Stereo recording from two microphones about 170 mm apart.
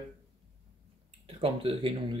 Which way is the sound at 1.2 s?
35° right (ahead or behind).